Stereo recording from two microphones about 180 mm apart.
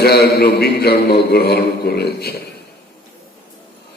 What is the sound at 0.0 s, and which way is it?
A man's voice, 60° left (ahead or behind).